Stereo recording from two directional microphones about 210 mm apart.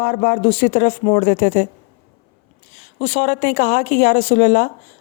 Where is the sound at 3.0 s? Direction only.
30° left (ahead or behind).